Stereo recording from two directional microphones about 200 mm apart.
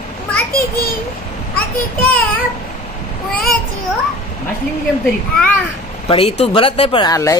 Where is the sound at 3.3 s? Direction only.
45° left (ahead or behind).